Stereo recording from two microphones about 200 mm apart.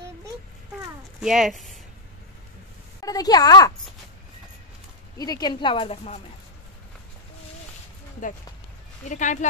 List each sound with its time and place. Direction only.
1.2 s speech: centre (ahead or behind)
3.0 s speech: 20° left (ahead or behind)
5.1 s speech: 20° left (ahead or behind)
8.2 s speech: 40° left (ahead or behind)